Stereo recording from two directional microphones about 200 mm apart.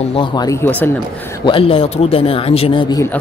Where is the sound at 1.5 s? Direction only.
25° left (ahead or behind).